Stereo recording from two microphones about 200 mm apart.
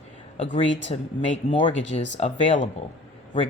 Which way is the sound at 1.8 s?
65° left (ahead or behind).